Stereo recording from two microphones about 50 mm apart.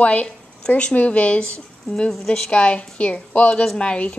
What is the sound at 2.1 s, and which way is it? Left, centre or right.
Speech, centre.